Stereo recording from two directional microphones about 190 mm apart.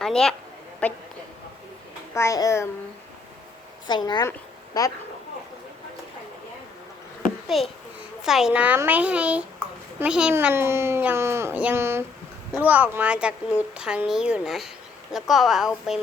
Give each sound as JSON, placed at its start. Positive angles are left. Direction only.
{"t": 0.0, "sound": "a woman's voice", "side_deg": 5}
{"t": 2.1, "sound": "a child's voice", "side_deg": 15}
{"t": 3.8, "sound": "speech", "side_deg": 20}
{"t": 7.5, "sound": "a woman's voice", "side_deg": 0}